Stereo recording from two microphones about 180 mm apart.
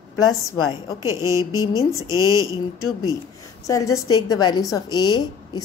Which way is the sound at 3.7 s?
20° left (ahead or behind).